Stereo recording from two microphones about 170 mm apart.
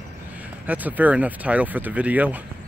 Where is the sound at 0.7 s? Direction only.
10° right (ahead or behind).